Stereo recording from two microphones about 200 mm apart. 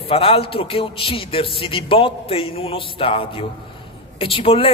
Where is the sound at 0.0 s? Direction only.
30° left (ahead or behind).